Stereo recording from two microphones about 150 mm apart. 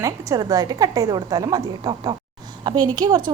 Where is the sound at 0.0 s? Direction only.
25° right (ahead or behind).